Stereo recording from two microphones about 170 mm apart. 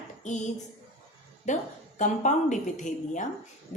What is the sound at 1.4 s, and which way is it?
A woman's voice, 45° left (ahead or behind).